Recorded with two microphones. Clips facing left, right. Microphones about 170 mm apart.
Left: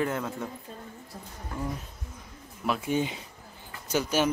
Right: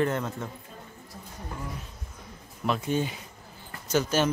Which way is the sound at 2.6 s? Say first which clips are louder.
Even; 5° left (ahead or behind).